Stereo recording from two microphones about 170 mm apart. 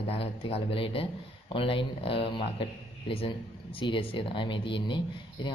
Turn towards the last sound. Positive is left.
turn(degrees=30)  # may be behind; listen again after turning